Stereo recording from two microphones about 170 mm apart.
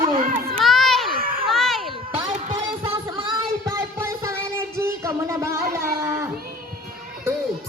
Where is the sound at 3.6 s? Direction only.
15° right (ahead or behind).